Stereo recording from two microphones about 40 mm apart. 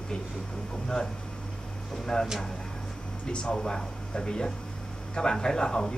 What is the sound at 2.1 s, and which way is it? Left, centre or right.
Speech, centre.